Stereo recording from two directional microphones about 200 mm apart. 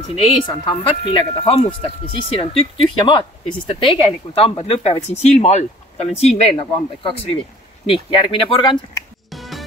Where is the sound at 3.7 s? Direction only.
25° left (ahead or behind).